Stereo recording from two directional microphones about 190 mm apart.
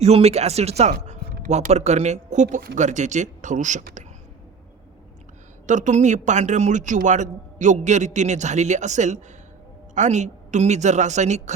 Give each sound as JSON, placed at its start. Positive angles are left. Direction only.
{"t": 0.0, "sound": "a man's voice", "side_deg": -35}
{"t": 5.6, "sound": "a man's voice", "side_deg": -40}